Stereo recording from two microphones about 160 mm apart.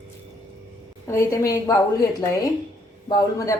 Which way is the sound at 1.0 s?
20° left (ahead or behind).